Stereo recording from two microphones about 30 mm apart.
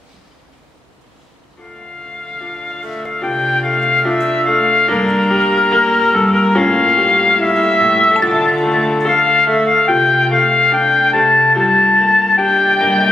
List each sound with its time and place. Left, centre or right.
2.4 s music: left